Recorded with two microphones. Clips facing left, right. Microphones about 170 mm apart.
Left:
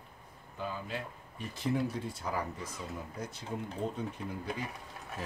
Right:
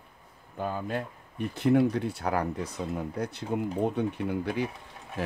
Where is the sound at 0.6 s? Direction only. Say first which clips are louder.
Right 7 dB; 50° right (ahead or behind).